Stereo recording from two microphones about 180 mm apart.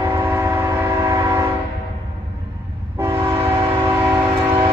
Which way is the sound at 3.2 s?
15° right (ahead or behind).